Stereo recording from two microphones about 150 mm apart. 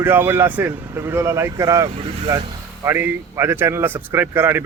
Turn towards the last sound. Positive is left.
turn(degrees=-15)  # may be behind; listen again after turning